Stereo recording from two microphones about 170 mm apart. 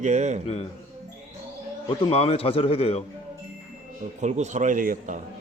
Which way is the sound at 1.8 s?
35° left (ahead or behind).